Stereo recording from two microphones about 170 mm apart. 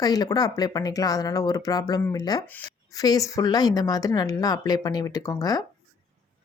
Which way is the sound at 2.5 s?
10° left (ahead or behind).